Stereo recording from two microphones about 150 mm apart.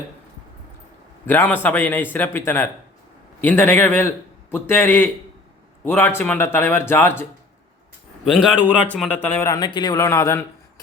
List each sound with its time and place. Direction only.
1.3 s speech: 15° left (ahead or behind)
8.6 s a man's voice: 10° left (ahead or behind)